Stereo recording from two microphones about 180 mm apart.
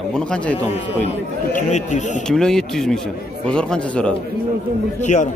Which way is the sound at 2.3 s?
5° left (ahead or behind).